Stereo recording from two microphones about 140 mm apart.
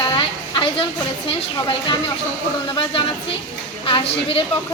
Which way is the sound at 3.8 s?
40° left (ahead or behind).